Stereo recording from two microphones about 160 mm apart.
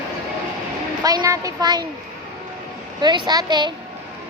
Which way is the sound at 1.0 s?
25° right (ahead or behind).